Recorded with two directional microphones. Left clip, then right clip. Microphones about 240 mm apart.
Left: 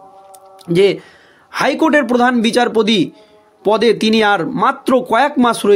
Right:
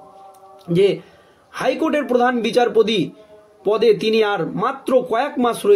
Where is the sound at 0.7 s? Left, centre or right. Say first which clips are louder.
Left 4 dB; left.